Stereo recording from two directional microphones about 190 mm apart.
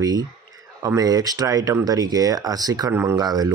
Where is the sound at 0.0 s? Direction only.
20° right (ahead or behind).